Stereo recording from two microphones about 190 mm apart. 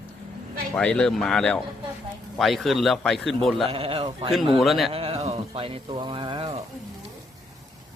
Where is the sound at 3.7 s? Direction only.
30° right (ahead or behind).